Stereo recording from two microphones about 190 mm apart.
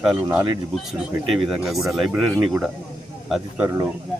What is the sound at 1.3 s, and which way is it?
Speech, 5° right (ahead or behind).